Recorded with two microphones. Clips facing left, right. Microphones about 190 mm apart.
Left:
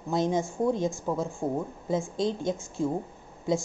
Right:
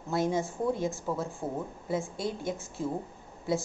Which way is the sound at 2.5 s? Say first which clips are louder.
Left 5 dB; 15° left (ahead or behind).